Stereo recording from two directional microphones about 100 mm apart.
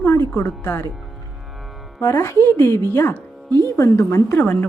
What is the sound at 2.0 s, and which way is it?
A woman's voice, 30° left (ahead or behind).